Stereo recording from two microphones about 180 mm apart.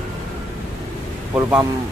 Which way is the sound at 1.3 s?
15° right (ahead or behind).